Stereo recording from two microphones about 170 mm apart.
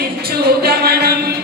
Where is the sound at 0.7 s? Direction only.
65° right (ahead or behind).